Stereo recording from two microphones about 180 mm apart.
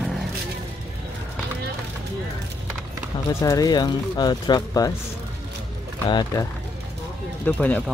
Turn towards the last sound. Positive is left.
turn(degrees=10)  # may be behind; listen again after turning